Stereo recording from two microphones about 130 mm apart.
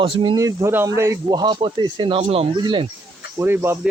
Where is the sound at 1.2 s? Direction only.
35° right (ahead or behind).